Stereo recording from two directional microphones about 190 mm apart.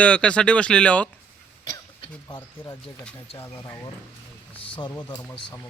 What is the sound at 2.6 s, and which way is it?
A man's voice, 5° left (ahead or behind).